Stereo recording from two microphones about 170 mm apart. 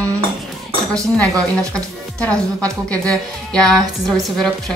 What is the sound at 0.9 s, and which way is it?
Speech, 20° right (ahead or behind).